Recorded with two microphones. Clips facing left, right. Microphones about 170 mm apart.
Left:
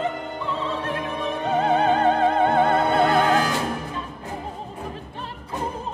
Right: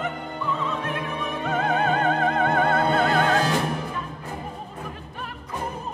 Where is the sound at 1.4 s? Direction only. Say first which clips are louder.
Left 4 dB; 30° left (ahead or behind).